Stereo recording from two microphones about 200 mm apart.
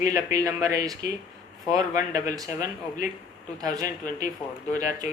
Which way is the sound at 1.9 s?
40° left (ahead or behind).